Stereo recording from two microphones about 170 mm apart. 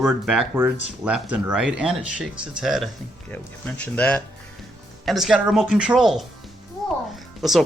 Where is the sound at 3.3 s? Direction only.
10° left (ahead or behind).